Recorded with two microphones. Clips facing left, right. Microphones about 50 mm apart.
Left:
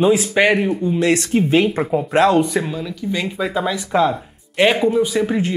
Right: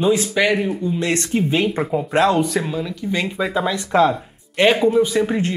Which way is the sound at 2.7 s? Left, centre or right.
Centre.